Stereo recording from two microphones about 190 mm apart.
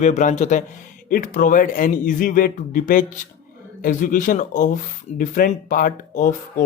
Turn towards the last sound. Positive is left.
turn(degrees=45)  # may be behind; listen again after turning